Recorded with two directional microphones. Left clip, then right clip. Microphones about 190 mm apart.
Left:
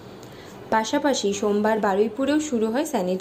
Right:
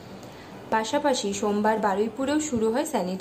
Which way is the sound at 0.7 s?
10° left (ahead or behind).